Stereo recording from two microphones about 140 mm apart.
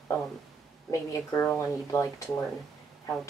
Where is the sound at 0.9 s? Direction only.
20° left (ahead or behind).